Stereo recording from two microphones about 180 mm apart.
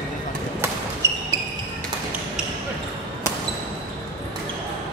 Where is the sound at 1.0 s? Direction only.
15° right (ahead or behind).